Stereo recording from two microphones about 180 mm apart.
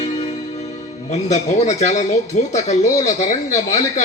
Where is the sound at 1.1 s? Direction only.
40° left (ahead or behind).